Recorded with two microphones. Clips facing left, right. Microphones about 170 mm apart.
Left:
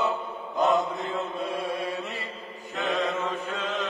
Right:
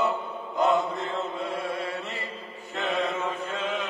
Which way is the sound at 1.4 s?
20° left (ahead or behind).